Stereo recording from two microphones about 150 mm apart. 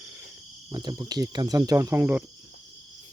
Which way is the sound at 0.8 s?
25° right (ahead or behind).